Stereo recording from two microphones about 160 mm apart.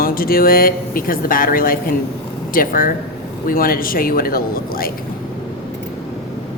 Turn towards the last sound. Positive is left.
turn(degrees=65)  # may be behind; listen again after turning